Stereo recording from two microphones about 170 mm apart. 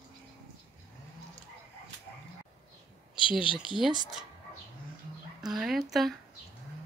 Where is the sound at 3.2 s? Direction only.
30° left (ahead or behind).